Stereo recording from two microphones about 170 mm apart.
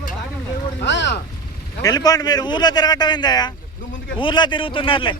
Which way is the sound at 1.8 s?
20° left (ahead or behind).